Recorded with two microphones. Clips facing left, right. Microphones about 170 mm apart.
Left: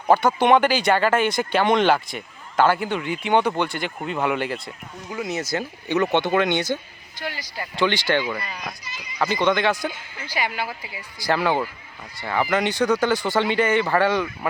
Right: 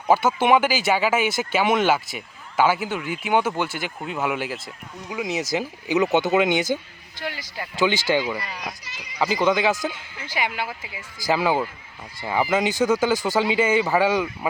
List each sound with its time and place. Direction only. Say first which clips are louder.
0.1 s speech: left 1 dB; 5° right (ahead or behind)
5.0 s speech: right 1 dB; 15° right (ahead or behind)
5.5 s speech: right 1 dB; 5° right (ahead or behind)
8.8 s speech: left 2 dB; 75° right (ahead or behind)
9.1 s speech: even; 5° right (ahead or behind)
9.8 s speech: even; 20° right (ahead or behind)
11.3 s speech: even; 10° right (ahead or behind)